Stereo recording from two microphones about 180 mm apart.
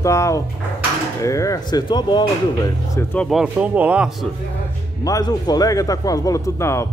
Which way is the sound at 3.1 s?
Centre (ahead or behind).